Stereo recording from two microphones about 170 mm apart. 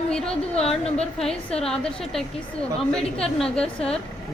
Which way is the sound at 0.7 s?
35° left (ahead or behind).